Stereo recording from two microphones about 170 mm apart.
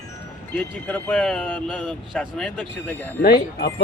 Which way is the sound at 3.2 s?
70° left (ahead or behind).